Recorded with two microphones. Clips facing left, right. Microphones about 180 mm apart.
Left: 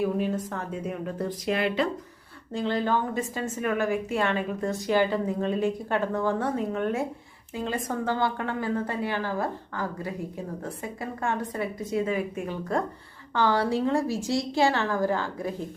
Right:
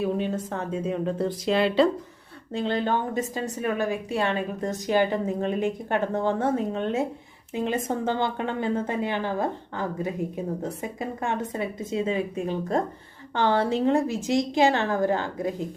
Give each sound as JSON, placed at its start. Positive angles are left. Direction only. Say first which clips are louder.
{"t": 0.0, "sound": "a woman's voice", "louder": "even", "side_deg": -25}